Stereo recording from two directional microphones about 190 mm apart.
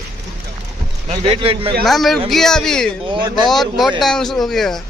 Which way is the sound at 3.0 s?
25° right (ahead or behind).